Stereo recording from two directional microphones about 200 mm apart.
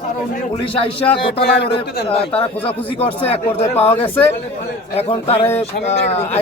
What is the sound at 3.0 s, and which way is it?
Speech, 30° left (ahead or behind).